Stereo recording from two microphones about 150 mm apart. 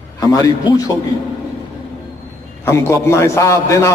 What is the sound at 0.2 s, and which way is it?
Speech, 25° left (ahead or behind).